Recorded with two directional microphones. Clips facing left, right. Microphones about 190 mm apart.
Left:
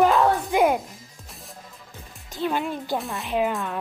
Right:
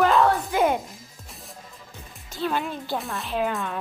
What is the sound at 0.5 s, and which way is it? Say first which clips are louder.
Speech: left 3 dB; 20° left (ahead or behind).